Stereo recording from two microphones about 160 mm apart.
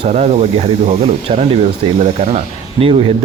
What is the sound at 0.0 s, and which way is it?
Speech, 45° right (ahead or behind).